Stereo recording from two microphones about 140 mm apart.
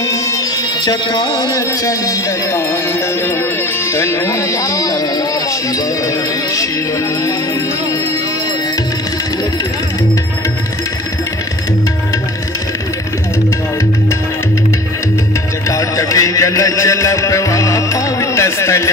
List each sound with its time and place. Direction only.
0.0 s music: 25° left (ahead or behind)
3.9 s music: 20° left (ahead or behind)
15.7 s music: 20° left (ahead or behind)